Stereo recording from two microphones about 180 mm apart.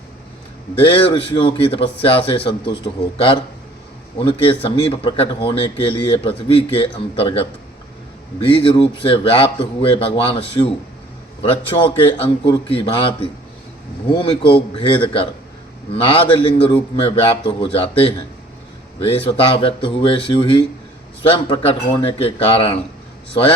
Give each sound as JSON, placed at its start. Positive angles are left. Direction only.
{"t": 0.8, "sound": "a man's voice", "side_deg": 30}
{"t": 8.4, "sound": "a man's voice", "side_deg": 30}